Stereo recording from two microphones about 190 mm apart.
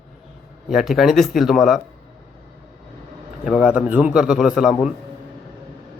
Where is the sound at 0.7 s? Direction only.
Centre (ahead or behind).